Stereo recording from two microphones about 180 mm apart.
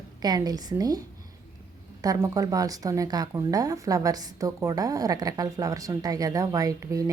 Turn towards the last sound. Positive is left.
turn(degrees=-20)  # may be behind; listen again after turning